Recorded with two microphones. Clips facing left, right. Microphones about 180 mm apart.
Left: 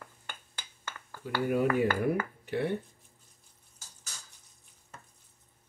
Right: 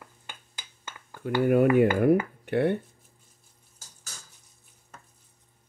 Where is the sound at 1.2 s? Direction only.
60° right (ahead or behind).